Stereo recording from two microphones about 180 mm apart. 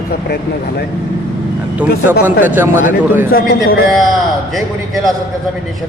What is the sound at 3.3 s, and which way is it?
Speech, 55° left (ahead or behind).